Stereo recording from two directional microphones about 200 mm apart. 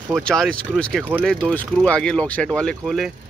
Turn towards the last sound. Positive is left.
turn(degrees=0)  # may be behind; listen again after turning